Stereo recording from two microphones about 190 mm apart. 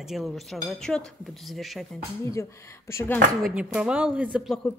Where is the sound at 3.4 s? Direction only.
5° right (ahead or behind).